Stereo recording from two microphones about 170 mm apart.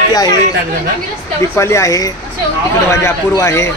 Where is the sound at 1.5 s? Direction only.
15° left (ahead or behind).